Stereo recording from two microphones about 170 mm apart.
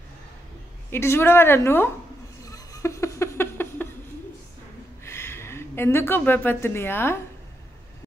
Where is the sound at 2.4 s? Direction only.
20° left (ahead or behind).